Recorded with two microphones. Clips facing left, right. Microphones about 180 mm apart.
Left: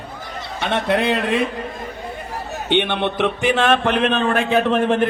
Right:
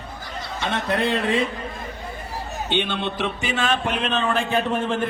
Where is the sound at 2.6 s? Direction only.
65° left (ahead or behind).